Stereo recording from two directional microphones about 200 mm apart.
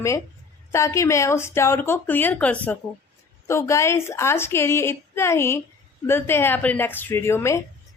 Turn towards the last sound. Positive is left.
turn(degrees=15)  # may be behind; listen again after turning